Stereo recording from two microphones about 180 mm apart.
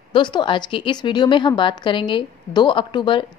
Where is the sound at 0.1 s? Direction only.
25° left (ahead or behind).